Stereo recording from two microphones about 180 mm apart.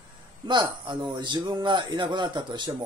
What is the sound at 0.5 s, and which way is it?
Speech, 25° right (ahead or behind).